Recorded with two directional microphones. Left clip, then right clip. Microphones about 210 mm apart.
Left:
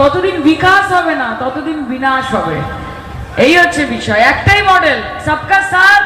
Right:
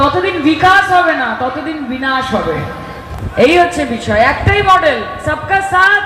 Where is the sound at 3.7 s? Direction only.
55° right (ahead or behind).